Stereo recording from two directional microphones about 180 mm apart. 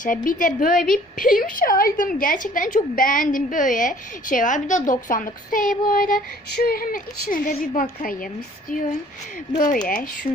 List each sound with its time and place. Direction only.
0.0 s a woman's voice: 45° left (ahead or behind)
9.6 s a woman's voice: 45° left (ahead or behind)